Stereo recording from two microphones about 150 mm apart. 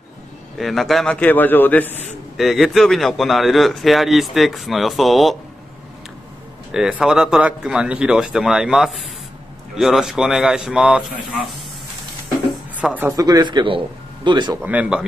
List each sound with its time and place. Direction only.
0.6 s a man's voice: centre (ahead or behind)
2.3 s speech: centre (ahead or behind)
6.7 s speech: 5° right (ahead or behind)
12.7 s speech: 10° right (ahead or behind)
13.2 s speech: 30° right (ahead or behind)
14.6 s speech: 10° right (ahead or behind)